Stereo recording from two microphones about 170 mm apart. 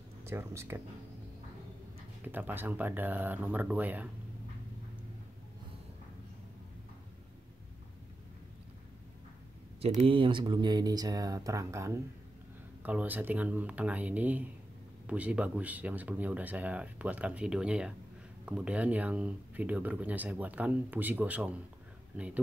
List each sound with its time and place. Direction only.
0.2 s speech: 15° right (ahead or behind)
2.2 s speech: 10° right (ahead or behind)
9.8 s speech: 40° right (ahead or behind); by 22.4 s 10° right (ahead or behind)